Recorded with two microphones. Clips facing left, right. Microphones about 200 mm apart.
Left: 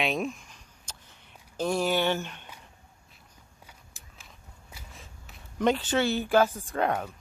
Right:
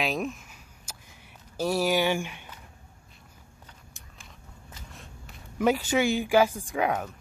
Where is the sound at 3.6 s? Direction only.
5° left (ahead or behind); by 6.7 s 10° right (ahead or behind).